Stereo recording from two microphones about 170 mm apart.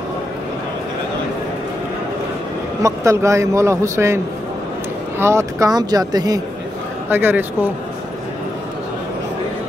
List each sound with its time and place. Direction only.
2.8 s a man's voice: 20° right (ahead or behind)
5.2 s speech: 15° right (ahead or behind)
7.1 s a man's voice: 10° right (ahead or behind)